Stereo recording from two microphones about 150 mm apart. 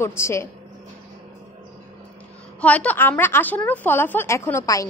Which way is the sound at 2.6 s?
10° left (ahead or behind).